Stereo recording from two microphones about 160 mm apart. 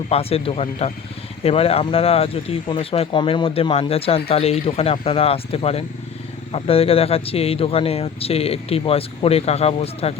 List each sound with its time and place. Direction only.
0.1 s speech: 40° left (ahead or behind)